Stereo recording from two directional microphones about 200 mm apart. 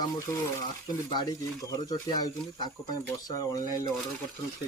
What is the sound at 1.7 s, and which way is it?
Speech, 20° left (ahead or behind).